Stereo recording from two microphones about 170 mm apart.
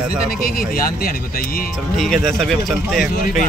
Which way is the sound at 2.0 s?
Centre (ahead or behind).